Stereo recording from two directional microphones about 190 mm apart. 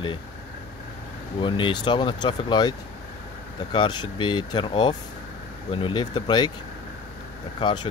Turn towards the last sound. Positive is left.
turn(degrees=25)  # may be behind; listen again after turning